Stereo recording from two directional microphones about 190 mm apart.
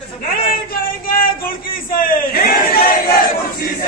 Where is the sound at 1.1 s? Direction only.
50° left (ahead or behind).